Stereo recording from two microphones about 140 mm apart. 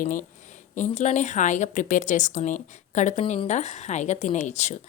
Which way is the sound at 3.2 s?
40° left (ahead or behind).